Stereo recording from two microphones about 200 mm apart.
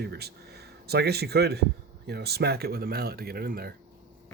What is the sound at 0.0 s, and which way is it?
Speech, 55° right (ahead or behind).